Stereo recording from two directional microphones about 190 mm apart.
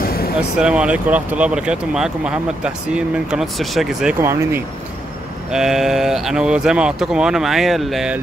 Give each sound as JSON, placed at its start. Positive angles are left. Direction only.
{"t": 0.0, "sound": "vehicle", "side_deg": 50}
{"t": 0.4, "sound": "speech", "side_deg": -5}
{"t": 4.2, "sound": "speech", "side_deg": -15}
{"t": 5.5, "sound": "speech", "side_deg": -5}